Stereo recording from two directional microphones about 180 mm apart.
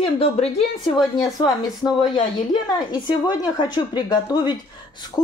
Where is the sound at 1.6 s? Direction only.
20° left (ahead or behind).